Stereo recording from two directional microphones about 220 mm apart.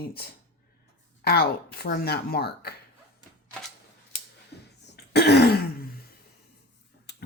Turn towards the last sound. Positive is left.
turn(degrees=45)  # may be behind; listen again after turning